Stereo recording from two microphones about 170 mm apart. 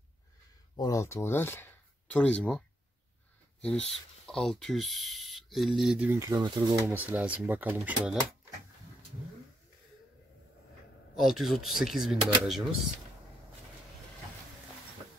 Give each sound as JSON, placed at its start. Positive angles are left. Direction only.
{"t": 0.7, "sound": "speech", "side_deg": 20}
{"t": 4.3, "sound": "speech", "side_deg": 5}
{"t": 6.9, "sound": "speech", "side_deg": -10}
{"t": 11.1, "sound": "speech", "side_deg": 0}